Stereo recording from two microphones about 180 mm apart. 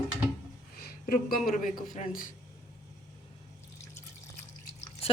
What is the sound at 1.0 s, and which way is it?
A man's voice, 55° left (ahead or behind).